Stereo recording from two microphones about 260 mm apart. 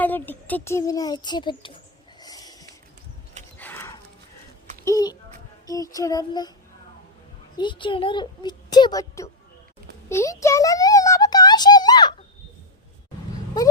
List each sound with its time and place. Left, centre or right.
0.0 s a child's voice: centre
2.2 s a sound: centre
3.6 s horse: centre
4.9 s a child's voice: centre
7.5 s a child's voice: centre
10.1 s a sound: centre